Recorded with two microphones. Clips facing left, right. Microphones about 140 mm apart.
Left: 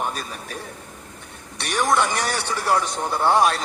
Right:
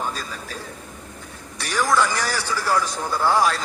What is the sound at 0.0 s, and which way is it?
Speech, 20° left (ahead or behind).